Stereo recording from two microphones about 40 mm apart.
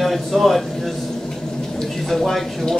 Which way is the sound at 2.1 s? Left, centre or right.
Centre.